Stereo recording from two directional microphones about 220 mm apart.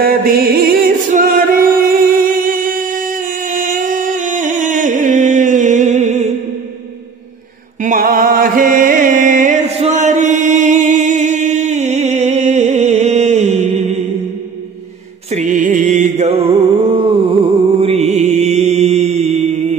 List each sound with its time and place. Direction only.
0.0 s music: 45° right (ahead or behind)
7.8 s music: 40° right (ahead or behind)
15.3 s music: 35° right (ahead or behind)
17.7 s mantra: 30° right (ahead or behind)